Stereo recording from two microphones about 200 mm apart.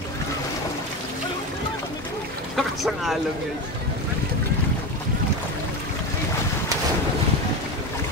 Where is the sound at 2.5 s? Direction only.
Centre (ahead or behind).